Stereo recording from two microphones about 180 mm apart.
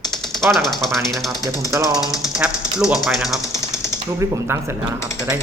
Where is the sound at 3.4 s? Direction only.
15° left (ahead or behind).